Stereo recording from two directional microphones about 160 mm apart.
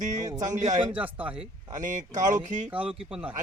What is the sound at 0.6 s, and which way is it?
Speech, 25° right (ahead or behind).